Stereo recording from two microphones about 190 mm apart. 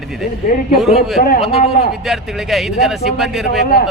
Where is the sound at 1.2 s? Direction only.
45° left (ahead or behind).